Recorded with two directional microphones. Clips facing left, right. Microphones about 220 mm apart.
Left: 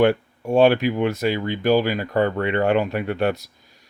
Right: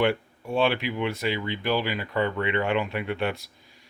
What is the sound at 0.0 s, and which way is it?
Speech, 45° left (ahead or behind).